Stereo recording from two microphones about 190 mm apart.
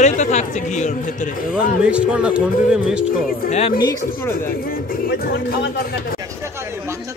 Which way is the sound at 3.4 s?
45° left (ahead or behind).